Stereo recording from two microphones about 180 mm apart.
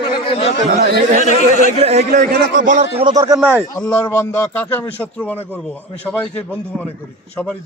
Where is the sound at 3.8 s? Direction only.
10° left (ahead or behind).